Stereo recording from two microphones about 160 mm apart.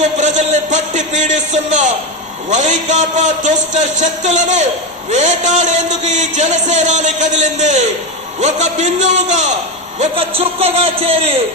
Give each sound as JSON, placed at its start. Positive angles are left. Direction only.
{"t": 0.0, "sound": "a sound", "side_deg": -50}
{"t": 2.5, "sound": "a man's voice", "side_deg": -50}
{"t": 10.0, "sound": "speech", "side_deg": -35}